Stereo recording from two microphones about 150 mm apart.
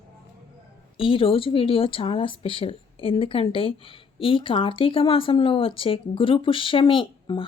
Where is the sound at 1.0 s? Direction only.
35° left (ahead or behind).